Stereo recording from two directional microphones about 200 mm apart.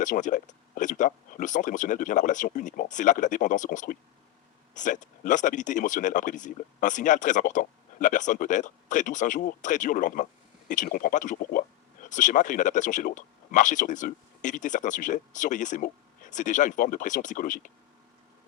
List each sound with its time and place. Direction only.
0.0 s speech: 40° left (ahead or behind)